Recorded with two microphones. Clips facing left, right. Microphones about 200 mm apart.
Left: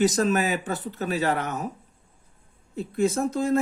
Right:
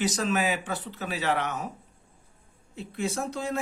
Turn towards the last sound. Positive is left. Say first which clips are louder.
# left 7 dB
turn(degrees=45)  # may be behind; listen again after turning